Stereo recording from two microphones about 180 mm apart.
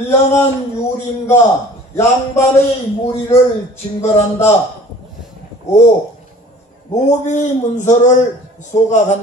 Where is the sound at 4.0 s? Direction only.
15° left (ahead or behind).